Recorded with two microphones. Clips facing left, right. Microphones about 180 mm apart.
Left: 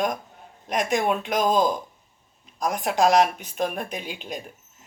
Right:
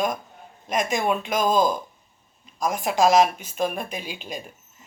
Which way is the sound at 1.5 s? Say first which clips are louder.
Right 1 dB; 15° left (ahead or behind).